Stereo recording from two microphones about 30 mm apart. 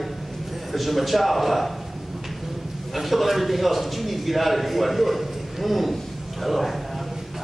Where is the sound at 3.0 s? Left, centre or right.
Centre.